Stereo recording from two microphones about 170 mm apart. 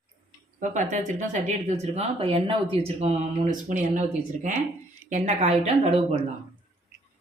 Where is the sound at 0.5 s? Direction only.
45° right (ahead or behind).